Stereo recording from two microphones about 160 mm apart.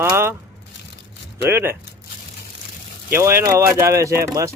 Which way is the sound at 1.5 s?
15° right (ahead or behind).